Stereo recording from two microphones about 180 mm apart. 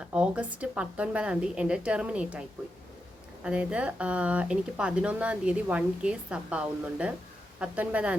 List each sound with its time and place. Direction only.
0.0 s speech: 5° right (ahead or behind)
3.4 s speech: 5° right (ahead or behind)